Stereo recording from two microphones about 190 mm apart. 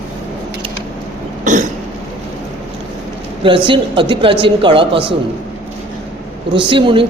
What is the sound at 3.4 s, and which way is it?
A woman's voice, 25° right (ahead or behind).